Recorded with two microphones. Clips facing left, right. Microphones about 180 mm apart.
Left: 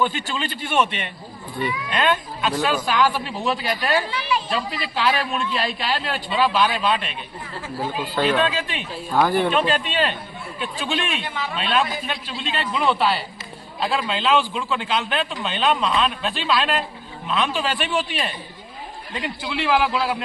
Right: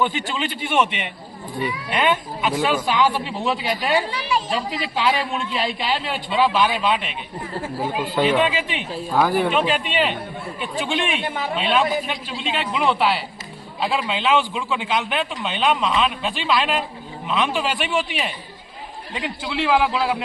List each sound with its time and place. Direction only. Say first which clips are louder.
0.0 s a man's voice: right 1 dB; 15° right (ahead or behind)
4.1 s a sound: right 1 dB; 40° right (ahead or behind)
4.4 s a man's voice: right 1 dB; 20° right (ahead or behind)
9.1 s a man's voice: even; 5° right (ahead or behind)
11.2 s speech: right 3 dB; 50° right (ahead or behind)
11.5 s a man's voice: right 3 dB; 15° right (ahead or behind)
19.4 s a man's voice: right 1 dB; 20° right (ahead or behind)